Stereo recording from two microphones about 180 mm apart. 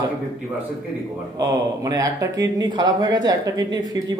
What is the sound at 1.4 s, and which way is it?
Speech, 20° right (ahead or behind).